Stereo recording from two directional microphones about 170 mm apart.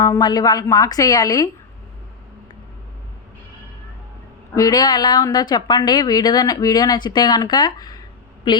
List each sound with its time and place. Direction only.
0.0 s a woman's voice: 25° left (ahead or behind)
4.5 s a woman's voice: 20° left (ahead or behind)